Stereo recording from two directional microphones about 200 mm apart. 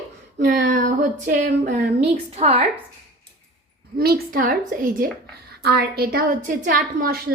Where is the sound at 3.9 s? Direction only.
50° right (ahead or behind).